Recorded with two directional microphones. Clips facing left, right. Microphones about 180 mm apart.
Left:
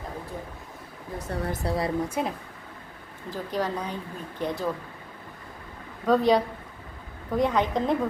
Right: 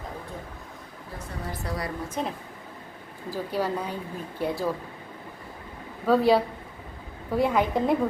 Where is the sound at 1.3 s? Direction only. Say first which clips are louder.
Left 8 dB; 60° left (ahead or behind).